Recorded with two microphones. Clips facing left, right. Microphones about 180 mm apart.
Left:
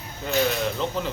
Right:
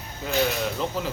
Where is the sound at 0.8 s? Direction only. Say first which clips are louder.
Left 1 dB; 5° right (ahead or behind).